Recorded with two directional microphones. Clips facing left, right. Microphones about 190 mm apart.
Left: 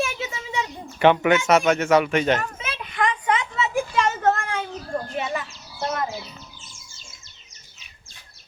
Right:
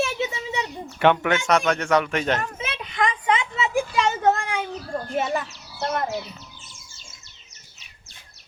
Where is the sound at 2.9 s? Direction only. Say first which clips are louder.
Even; 20° right (ahead or behind).